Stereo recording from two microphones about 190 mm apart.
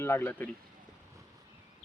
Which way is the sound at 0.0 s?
10° left (ahead or behind).